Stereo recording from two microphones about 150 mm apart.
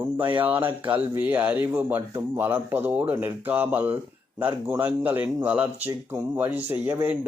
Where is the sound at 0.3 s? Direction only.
10° right (ahead or behind).